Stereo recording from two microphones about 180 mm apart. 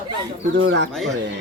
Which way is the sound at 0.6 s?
85° right.